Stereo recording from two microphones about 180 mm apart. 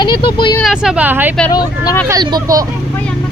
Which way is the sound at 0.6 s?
5° right (ahead or behind).